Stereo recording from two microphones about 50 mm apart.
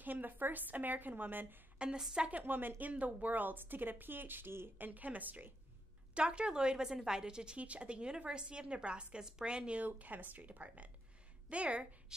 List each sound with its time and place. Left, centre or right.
0.0 s a woman's voice: right
2.0 s a woman's voice: centre
2.2 s a woman's voice: right
2.8 s a woman's voice: right
4.7 s a woman's voice: right
6.1 s a woman's voice: right
7.5 s a woman's voice: right
9.8 s a woman's voice: right